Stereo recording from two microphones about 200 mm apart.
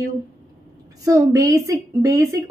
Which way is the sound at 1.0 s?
15° right (ahead or behind).